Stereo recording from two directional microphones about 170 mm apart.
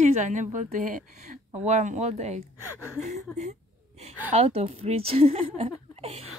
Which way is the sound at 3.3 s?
40° right (ahead or behind).